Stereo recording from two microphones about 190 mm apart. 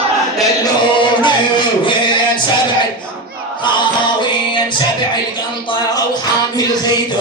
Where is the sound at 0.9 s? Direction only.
25° left (ahead or behind).